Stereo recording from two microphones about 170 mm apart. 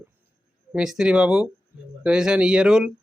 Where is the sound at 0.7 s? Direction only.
5° right (ahead or behind).